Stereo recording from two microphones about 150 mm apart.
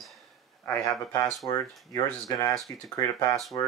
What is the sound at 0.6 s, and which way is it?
Speech, 15° left (ahead or behind).